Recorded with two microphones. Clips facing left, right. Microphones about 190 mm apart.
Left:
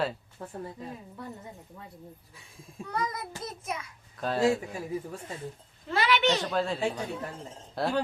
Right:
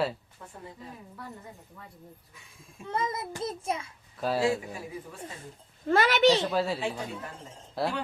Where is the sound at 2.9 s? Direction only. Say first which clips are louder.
Right 2 dB; 25° right (ahead or behind).